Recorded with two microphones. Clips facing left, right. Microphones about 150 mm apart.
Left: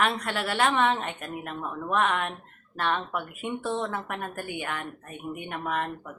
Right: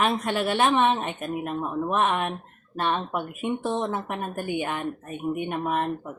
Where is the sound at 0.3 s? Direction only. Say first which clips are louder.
Right 4 dB; 20° right (ahead or behind).